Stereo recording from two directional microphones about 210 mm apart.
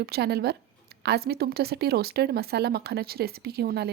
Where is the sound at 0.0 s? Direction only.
50° right (ahead or behind).